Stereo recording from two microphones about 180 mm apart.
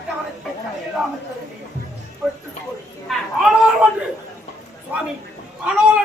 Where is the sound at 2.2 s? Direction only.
Centre (ahead or behind).